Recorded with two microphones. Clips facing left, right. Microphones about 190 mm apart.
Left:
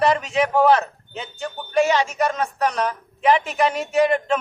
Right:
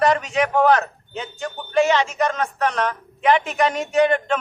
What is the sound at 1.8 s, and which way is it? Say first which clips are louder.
Speech: right 1 dB; 40° left (ahead or behind).